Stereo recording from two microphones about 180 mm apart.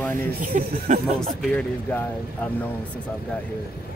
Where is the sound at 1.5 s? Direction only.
10° left (ahead or behind).